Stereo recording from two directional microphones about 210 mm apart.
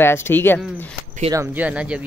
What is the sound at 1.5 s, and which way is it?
Speech, 5° right (ahead or behind).